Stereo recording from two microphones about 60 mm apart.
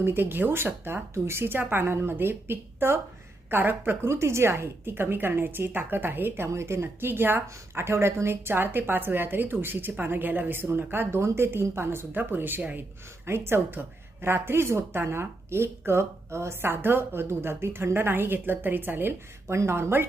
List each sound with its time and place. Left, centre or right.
0.0 s a woman's voice: right
6.5 s a woman's voice: right
19.5 s speech: right